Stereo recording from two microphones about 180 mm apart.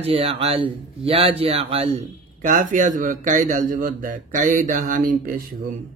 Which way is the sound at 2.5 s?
45° right (ahead or behind).